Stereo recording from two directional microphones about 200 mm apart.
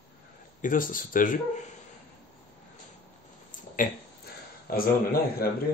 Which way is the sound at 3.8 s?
45° left (ahead or behind).